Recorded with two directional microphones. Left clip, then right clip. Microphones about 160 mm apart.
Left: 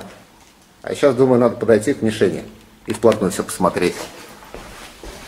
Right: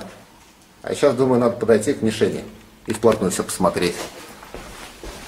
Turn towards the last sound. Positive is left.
turn(degrees=0)  # may be behind; listen again after turning